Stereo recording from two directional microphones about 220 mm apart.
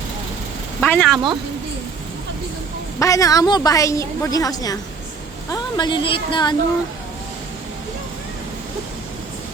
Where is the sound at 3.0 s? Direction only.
15° left (ahead or behind).